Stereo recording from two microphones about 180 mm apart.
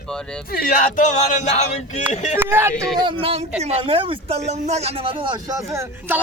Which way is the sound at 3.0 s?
30° right (ahead or behind).